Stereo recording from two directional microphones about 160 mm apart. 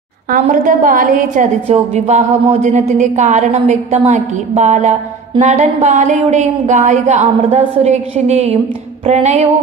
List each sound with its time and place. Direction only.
0.3 s a woman's voice: 55° right (ahead or behind)
1.7 s a woman's voice: 45° right (ahead or behind)